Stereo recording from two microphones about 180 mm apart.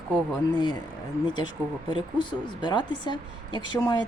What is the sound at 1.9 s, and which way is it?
A woman's voice, 25° left (ahead or behind).